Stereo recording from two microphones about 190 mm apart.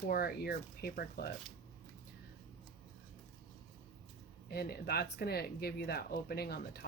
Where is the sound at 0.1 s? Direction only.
55° left (ahead or behind).